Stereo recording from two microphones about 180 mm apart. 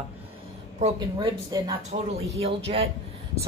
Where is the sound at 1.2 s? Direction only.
20° right (ahead or behind).